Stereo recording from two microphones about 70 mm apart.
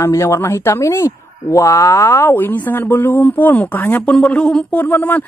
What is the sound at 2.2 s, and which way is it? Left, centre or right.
Speech, left.